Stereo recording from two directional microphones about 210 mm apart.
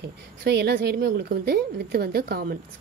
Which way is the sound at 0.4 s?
50° right (ahead or behind).